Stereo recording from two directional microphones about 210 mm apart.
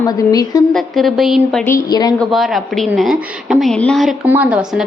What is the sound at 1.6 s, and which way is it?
Speech, 15° left (ahead or behind).